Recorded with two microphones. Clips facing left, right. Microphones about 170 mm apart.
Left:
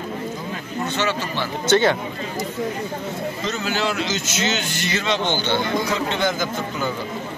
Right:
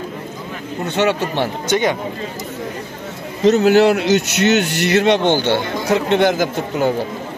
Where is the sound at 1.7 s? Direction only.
15° right (ahead or behind).